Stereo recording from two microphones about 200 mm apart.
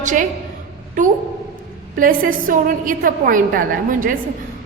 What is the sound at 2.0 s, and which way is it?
A woman's voice, 45° right (ahead or behind).